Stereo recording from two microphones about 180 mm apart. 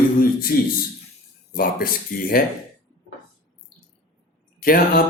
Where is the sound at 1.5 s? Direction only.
55° left (ahead or behind).